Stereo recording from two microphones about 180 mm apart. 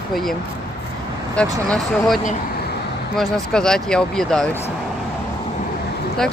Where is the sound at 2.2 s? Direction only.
60° left (ahead or behind).